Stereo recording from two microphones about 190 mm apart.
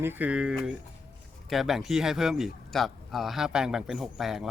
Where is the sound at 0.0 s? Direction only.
10° right (ahead or behind).